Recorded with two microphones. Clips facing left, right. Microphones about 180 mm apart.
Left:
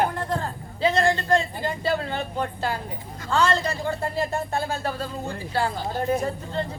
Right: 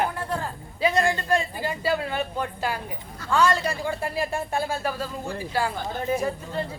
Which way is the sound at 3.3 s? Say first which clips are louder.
Even; 10° right (ahead or behind).